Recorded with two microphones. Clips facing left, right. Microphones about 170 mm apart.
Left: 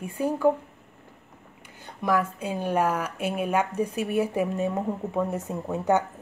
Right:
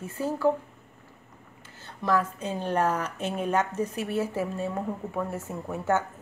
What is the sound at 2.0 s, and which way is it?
Speech, 10° left (ahead or behind).